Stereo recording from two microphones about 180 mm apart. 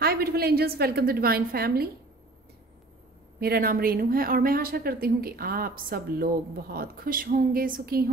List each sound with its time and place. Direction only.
0.0 s speech: 60° right (ahead or behind)
3.3 s speech: 60° right (ahead or behind)